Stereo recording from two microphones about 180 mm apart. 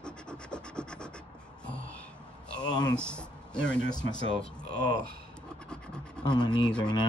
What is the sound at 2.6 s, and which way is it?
Speech, 20° left (ahead or behind).